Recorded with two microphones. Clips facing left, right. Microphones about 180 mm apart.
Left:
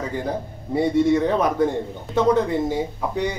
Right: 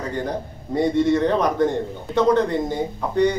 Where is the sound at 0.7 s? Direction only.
10° left (ahead or behind).